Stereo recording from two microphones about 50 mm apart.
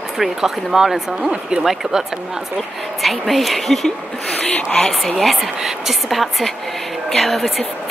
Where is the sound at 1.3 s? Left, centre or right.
Right.